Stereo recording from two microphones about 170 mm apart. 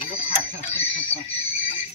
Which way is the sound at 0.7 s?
35° left (ahead or behind).